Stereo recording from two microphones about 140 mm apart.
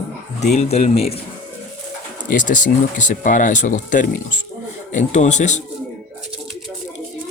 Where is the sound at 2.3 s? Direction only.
65° left (ahead or behind).